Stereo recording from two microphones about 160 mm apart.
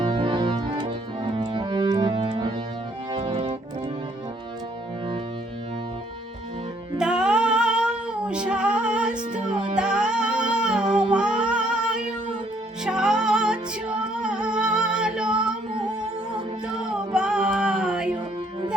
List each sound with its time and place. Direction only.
0.0 s organ: 30° right (ahead or behind)
7.0 s female singing: 5° right (ahead or behind)
9.6 s music: 5° right (ahead or behind)